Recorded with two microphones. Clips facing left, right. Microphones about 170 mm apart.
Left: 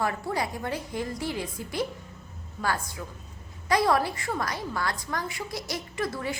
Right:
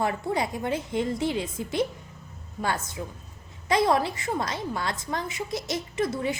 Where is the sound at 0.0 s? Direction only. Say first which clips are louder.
Right 2 dB; 20° right (ahead or behind).